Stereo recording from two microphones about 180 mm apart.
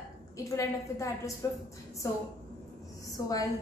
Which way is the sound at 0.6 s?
15° left (ahead or behind).